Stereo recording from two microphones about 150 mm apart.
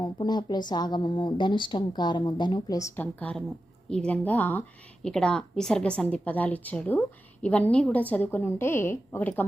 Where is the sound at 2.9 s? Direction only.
10° left (ahead or behind).